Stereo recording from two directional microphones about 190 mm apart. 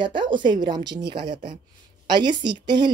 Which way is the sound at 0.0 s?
25° right (ahead or behind).